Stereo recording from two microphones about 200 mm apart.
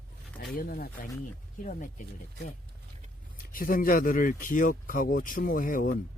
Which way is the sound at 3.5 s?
45° left (ahead or behind).